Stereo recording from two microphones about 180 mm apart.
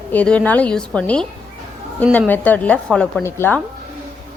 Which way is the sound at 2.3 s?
10° left (ahead or behind).